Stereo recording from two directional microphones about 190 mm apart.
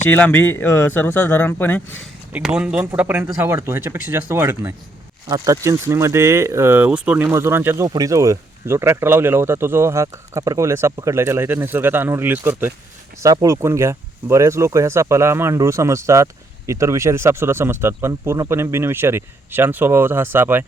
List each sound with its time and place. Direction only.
0.0 s speech: 10° left (ahead or behind)
2.6 s speech: 5° right (ahead or behind)